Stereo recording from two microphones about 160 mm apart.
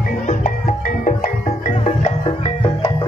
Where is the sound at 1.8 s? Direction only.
40° left (ahead or behind).